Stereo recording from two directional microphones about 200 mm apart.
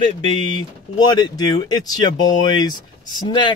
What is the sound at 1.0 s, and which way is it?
Speech, 20° left (ahead or behind).